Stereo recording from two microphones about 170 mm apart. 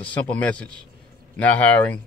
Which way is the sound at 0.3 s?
10° left (ahead or behind).